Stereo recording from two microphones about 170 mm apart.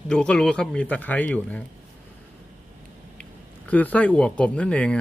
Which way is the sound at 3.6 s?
10° left (ahead or behind).